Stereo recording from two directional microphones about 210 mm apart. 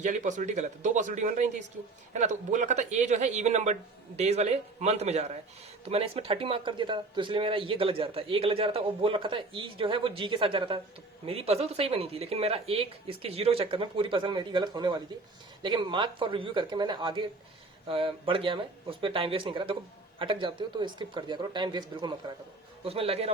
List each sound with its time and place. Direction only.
0.0 s speech: 35° right (ahead or behind)